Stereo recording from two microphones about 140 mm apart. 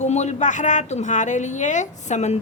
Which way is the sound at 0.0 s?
55° left (ahead or behind).